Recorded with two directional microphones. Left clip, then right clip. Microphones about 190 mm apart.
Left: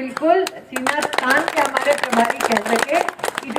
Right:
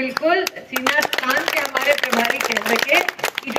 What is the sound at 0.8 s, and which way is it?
Speech, 45° right (ahead or behind).